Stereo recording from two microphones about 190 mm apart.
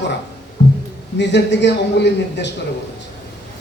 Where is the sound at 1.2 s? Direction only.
70° left (ahead or behind).